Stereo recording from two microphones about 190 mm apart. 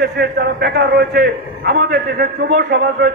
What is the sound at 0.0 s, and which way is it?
A man's voice, 60° right (ahead or behind).